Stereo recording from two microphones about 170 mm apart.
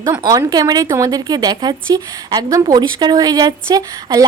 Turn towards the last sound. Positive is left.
turn(degrees=-20)  # may be behind; listen again after turning